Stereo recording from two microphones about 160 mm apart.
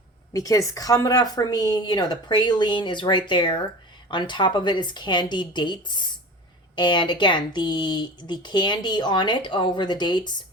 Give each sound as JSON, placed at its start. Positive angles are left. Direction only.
{"t": 0.3, "sound": "speech", "side_deg": 20}